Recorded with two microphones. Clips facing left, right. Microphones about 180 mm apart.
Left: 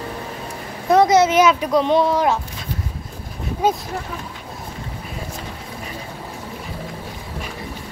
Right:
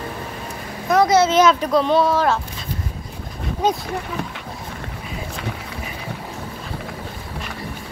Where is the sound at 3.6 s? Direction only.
10° left (ahead or behind).